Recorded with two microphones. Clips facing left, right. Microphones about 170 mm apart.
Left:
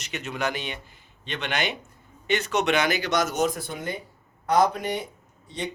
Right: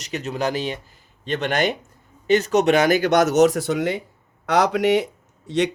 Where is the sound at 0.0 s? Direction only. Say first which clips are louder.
Right 5 dB; 35° right (ahead or behind).